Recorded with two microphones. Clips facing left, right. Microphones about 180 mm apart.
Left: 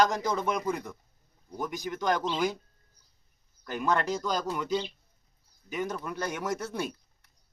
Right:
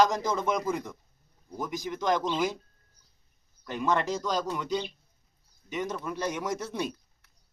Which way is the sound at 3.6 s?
Centre (ahead or behind).